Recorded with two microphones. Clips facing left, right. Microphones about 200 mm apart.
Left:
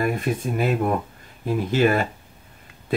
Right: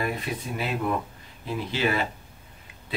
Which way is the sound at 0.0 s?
50° left (ahead or behind).